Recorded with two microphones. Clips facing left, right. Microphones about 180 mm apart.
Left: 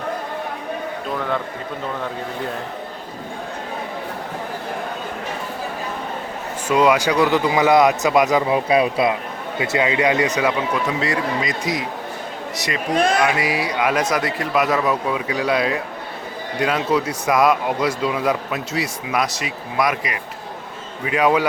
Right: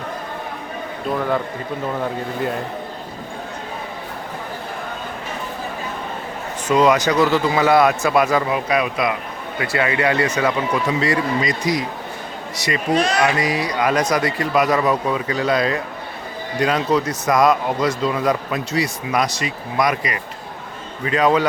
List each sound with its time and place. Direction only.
6.7 s a man's voice: 10° left (ahead or behind)
8.5 s a man's voice: 30° left (ahead or behind); by 10.5 s 15° left (ahead or behind)
10.7 s speech: centre (ahead or behind)
13.0 s speech: 55° left (ahead or behind)
13.2 s a man's voice: 5° left (ahead or behind)